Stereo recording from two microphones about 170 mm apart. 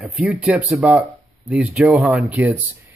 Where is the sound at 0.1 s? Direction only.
5° right (ahead or behind).